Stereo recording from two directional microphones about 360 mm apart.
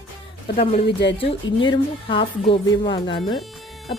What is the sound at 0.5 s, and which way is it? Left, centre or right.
Speech, left.